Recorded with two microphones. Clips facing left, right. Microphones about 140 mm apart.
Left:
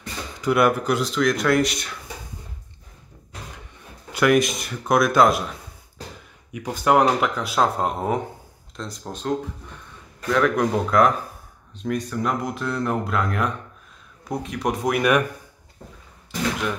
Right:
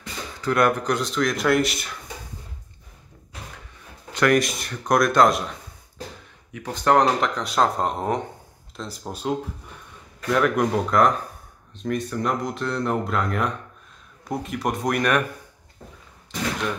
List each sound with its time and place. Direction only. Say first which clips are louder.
0.4 s speech: left 2 dB; 10° left (ahead or behind)
4.1 s speech: left 1 dB; 5° left (ahead or behind)
6.5 s speech: even; 10° left (ahead or behind)